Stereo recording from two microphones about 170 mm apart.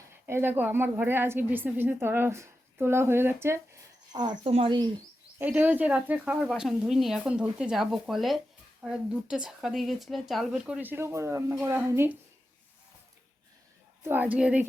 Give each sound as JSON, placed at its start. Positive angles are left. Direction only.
{"t": 0.3, "sound": "a woman's voice", "side_deg": -15}
{"t": 4.1, "sound": "speech", "side_deg": -25}
{"t": 5.4, "sound": "a woman's voice", "side_deg": -10}
{"t": 14.0, "sound": "a woman's voice", "side_deg": -10}